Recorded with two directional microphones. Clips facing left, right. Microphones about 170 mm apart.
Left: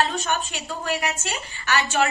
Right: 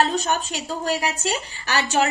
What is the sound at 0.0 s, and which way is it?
Speech, 40° right (ahead or behind).